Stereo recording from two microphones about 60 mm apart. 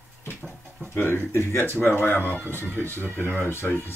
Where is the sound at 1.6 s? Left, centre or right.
Left.